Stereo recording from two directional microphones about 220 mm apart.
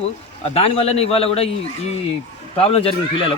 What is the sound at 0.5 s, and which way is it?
Speech, 30° left (ahead or behind).